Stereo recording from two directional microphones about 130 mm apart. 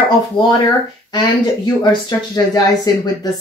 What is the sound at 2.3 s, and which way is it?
Speech, 30° left (ahead or behind).